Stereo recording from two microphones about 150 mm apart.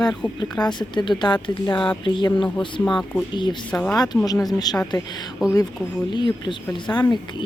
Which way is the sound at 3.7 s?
10° left (ahead or behind).